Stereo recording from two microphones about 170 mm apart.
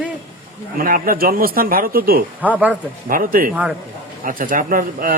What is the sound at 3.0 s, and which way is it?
A man's voice, 55° right (ahead or behind).